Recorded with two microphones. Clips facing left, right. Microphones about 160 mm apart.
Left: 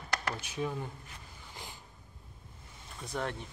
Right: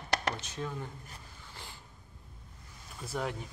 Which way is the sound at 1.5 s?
15° left (ahead or behind).